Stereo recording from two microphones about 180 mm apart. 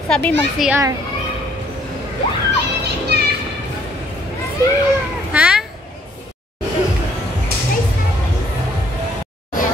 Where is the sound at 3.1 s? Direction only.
65° right (ahead or behind).